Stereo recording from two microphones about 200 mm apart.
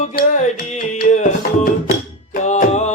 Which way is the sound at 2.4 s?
35° left (ahead or behind).